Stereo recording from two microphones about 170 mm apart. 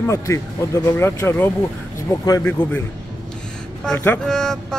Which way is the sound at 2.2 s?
15° left (ahead or behind).